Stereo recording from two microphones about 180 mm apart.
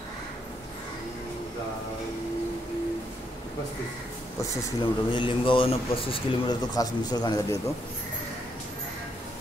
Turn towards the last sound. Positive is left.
turn(degrees=20)  # may be behind; listen again after turning